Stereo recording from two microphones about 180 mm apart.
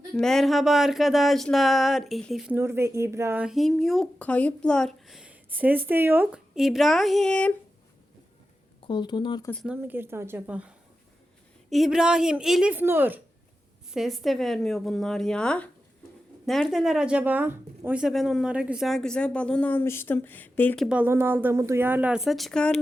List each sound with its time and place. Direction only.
0.1 s speech: centre (ahead or behind)
2.6 s speech: 15° right (ahead or behind); by 7.5 s 5° left (ahead or behind)
8.8 s speech: 25° left (ahead or behind)
9.6 s a woman's voice: 10° right (ahead or behind)
11.7 s speech: centre (ahead or behind)
13.9 s speech: centre (ahead or behind)
20.8 s a woman's voice: 10° right (ahead or behind)